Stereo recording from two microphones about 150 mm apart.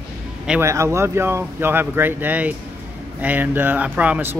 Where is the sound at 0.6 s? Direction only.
20° right (ahead or behind).